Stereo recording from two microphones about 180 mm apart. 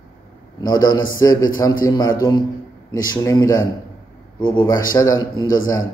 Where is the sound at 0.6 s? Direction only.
20° left (ahead or behind).